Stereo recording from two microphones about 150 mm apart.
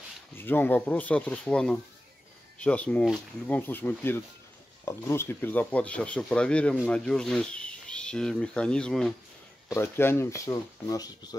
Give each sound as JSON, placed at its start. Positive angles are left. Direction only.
{"t": 0.4, "sound": "speech", "side_deg": 15}
{"t": 9.8, "sound": "speech", "side_deg": 15}